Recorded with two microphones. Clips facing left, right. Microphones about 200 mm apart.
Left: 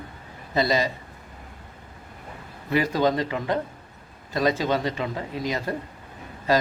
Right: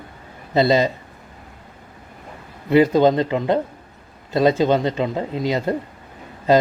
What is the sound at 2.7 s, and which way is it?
Speech, 25° right (ahead or behind).